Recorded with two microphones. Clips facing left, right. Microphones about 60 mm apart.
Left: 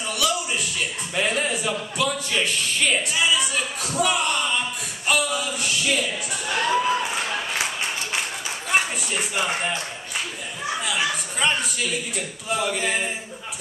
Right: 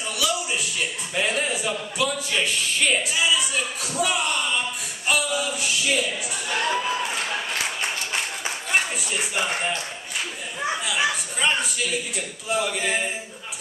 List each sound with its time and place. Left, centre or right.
0.1 s music: centre
8.6 s speech: centre
10.7 s a man's voice: centre